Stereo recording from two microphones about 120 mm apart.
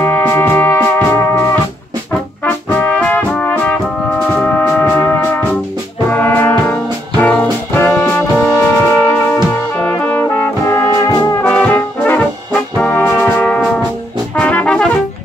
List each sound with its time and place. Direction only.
0.0 s music: 20° left (ahead or behind)
2.4 s brass instrument: 10° left (ahead or behind); by 11.3 s 30° left (ahead or behind)
11.4 s brass instrument: 15° left (ahead or behind)
14.4 s music: 10° left (ahead or behind)